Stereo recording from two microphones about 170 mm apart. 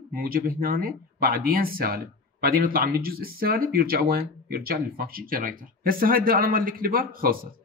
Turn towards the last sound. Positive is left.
turn(degrees=-55)  # may be behind; listen again after turning